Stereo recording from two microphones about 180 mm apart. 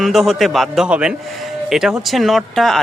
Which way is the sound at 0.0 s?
Centre (ahead or behind).